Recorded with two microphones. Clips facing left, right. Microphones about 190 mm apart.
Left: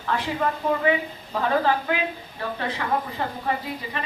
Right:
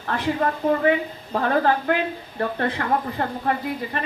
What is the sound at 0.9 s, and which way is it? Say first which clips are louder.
A woman's voice: right 3 dB; 50° right (ahead or behind).